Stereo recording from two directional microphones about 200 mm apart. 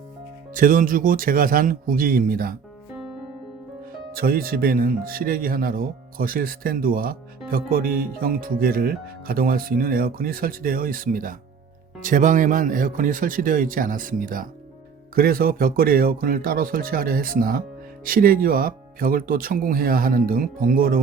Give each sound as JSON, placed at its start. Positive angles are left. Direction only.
{"t": 0.5, "sound": "speech", "side_deg": -45}
{"t": 4.1, "sound": "speech", "side_deg": -50}